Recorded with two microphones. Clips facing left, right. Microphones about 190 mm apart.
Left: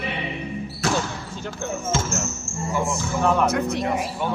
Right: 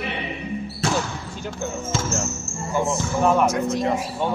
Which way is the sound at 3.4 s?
60° left (ahead or behind).